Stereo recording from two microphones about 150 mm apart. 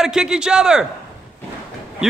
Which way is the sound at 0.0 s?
5° right (ahead or behind).